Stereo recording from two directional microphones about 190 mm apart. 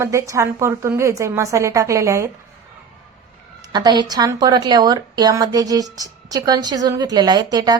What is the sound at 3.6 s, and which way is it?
Speech, 20° right (ahead or behind).